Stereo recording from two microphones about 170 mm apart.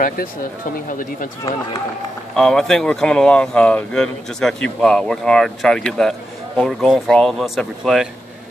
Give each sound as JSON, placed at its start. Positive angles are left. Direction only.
{"t": 0.8, "sound": "speech", "side_deg": 55}
{"t": 2.3, "sound": "speech", "side_deg": 5}